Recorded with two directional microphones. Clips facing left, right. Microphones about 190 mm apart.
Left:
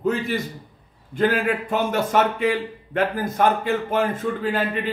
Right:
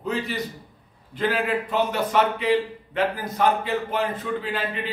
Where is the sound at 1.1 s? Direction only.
50° left (ahead or behind).